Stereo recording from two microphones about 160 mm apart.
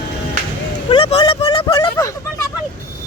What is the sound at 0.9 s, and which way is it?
Speech, 35° left (ahead or behind).